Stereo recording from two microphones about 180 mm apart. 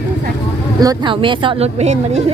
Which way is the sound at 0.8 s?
25° right (ahead or behind).